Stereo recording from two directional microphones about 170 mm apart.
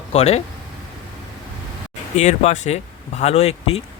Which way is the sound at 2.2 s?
45° left (ahead or behind).